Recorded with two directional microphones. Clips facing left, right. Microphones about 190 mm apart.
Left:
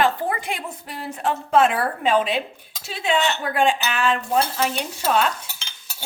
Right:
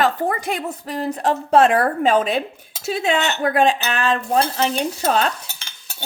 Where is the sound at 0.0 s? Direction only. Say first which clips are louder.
Right 2 dB; 40° right (ahead or behind).